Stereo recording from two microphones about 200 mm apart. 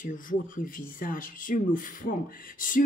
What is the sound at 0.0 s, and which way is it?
Speech, 40° left (ahead or behind).